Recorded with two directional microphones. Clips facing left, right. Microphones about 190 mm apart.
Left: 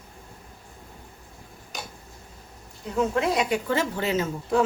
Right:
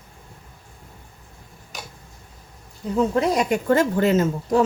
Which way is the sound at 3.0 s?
40° right (ahead or behind).